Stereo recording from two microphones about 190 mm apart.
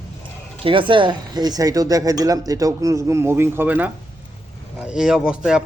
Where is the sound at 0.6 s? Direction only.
25° right (ahead or behind).